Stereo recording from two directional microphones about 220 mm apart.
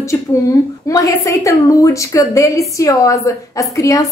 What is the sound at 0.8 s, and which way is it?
A woman's voice, 15° left (ahead or behind).